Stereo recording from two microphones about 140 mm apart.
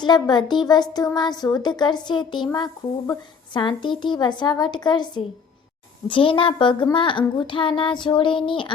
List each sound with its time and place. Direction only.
0.0 s speech: 30° left (ahead or behind)